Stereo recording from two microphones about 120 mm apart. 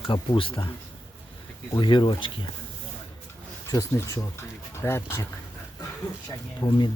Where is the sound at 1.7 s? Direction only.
40° left (ahead or behind).